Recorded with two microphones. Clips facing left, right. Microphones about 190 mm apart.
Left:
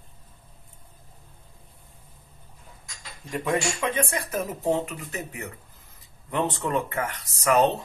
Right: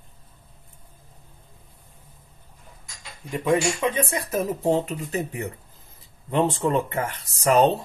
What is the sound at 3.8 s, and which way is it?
Speech, 25° right (ahead or behind).